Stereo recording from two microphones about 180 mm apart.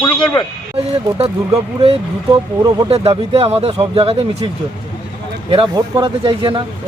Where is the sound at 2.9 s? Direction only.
35° right (ahead or behind).